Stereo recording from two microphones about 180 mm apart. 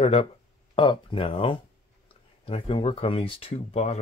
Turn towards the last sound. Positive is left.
turn(degrees=35)  # may be behind; listen again after turning